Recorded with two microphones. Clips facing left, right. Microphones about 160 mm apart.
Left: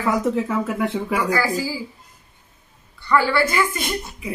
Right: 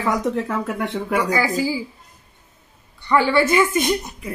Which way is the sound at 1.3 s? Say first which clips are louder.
Right 1 dB; 15° right (ahead or behind).